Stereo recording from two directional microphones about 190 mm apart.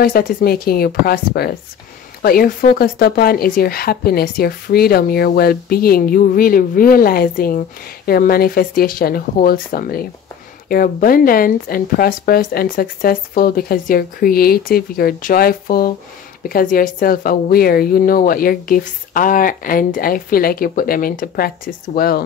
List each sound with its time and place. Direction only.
0.0 s speech: 50° left (ahead or behind)